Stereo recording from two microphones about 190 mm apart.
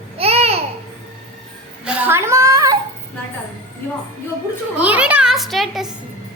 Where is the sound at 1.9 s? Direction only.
10° right (ahead or behind).